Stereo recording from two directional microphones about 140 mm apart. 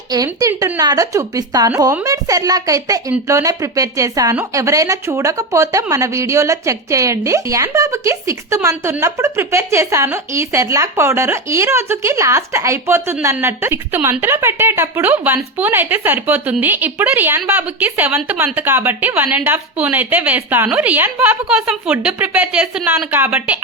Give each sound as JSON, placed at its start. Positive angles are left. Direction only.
{"t": 0.1, "sound": "a woman's voice", "side_deg": -25}